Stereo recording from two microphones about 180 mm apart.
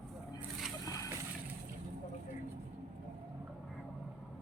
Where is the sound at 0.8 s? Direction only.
20° left (ahead or behind).